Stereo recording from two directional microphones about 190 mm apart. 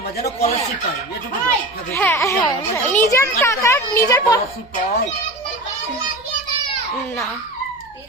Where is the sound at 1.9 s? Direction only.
10° left (ahead or behind).